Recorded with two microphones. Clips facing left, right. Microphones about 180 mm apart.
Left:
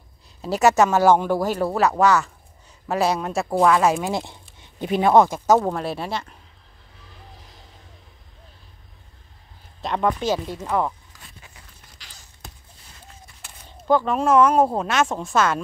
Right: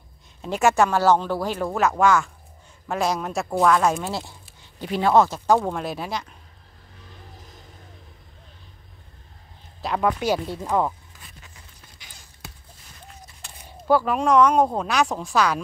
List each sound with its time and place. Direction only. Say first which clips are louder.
0.6 s speech: left 2 dB; 5° left (ahead or behind)
4.0 s speech: left 4 dB; 20° left (ahead or behind); by 6.2 s centre (ahead or behind)
9.8 s speech: left 1 dB; 5° right (ahead or behind)
13.7 s speech: even; 10° right (ahead or behind)